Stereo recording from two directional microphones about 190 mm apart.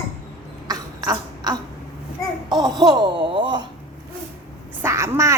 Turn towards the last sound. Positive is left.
turn(degrees=-15)  # may be behind; listen again after turning